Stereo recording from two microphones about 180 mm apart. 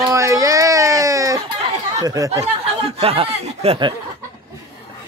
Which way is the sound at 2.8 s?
30° right (ahead or behind).